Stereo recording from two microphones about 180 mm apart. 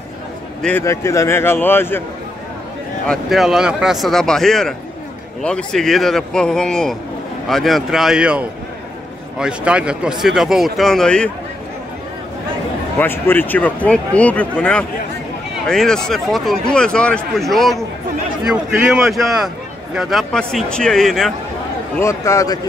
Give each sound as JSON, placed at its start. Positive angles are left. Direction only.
{"t": 0.6, "sound": "speech", "side_deg": 10}
{"t": 3.1, "sound": "speech", "side_deg": 0}
{"t": 13.0, "sound": "speech", "side_deg": 10}
{"t": 21.9, "sound": "speech", "side_deg": 15}